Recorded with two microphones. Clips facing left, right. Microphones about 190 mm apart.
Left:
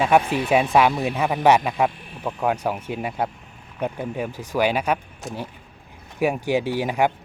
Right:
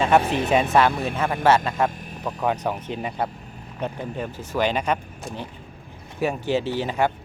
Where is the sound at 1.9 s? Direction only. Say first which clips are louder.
Right 3 dB; 40° right (ahead or behind).